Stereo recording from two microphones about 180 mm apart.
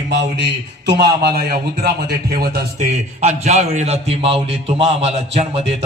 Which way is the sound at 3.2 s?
40° right (ahead or behind).